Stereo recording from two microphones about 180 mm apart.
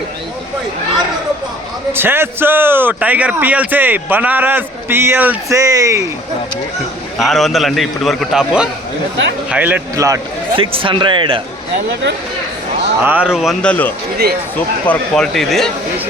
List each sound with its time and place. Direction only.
1.9 s a man's voice: 10° right (ahead or behind)
7.2 s a man's voice: centre (ahead or behind); by 10.6 s 15° right (ahead or behind)
10.6 s speech: 30° right (ahead or behind)
13.0 s a man's voice: 10° right (ahead or behind)